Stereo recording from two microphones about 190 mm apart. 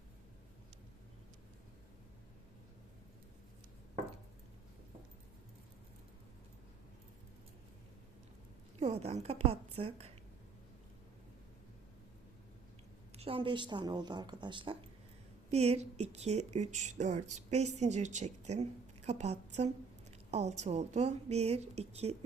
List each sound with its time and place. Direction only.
8.8 s speech: 35° right (ahead or behind)
13.1 s a woman's voice: 30° right (ahead or behind)